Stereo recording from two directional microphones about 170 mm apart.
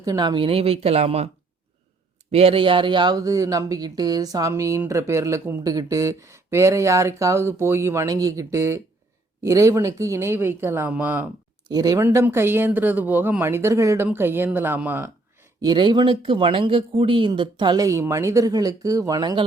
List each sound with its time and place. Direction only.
0.0 s speech: 25° right (ahead or behind)
2.3 s speech: 35° right (ahead or behind); by 11.3 s 10° right (ahead or behind)
11.7 s speech: 20° right (ahead or behind)
15.6 s speech: 25° right (ahead or behind)